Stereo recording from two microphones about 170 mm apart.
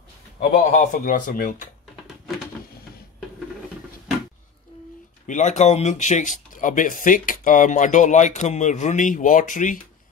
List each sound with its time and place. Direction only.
0.4 s speech: 45° left (ahead or behind)
5.2 s speech: 45° left (ahead or behind)